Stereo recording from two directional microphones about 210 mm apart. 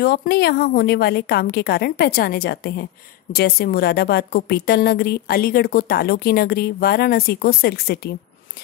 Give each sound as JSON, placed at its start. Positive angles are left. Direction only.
{"t": 0.0, "sound": "a woman's voice", "side_deg": 50}